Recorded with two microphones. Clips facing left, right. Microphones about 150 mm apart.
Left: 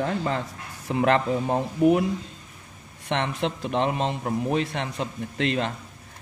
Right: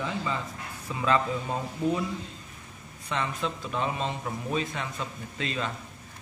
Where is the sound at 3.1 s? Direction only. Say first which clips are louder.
Left 5 dB; 75° left (ahead or behind).